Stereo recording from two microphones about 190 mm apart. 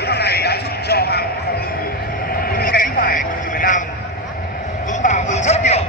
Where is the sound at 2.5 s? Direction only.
50° left (ahead or behind).